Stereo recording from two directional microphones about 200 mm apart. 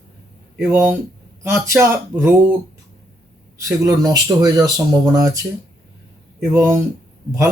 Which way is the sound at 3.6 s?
15° right (ahead or behind).